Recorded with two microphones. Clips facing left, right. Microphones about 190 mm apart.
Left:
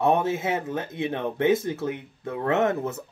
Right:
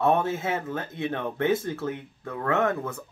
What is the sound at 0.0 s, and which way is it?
Speech, 20° left (ahead or behind).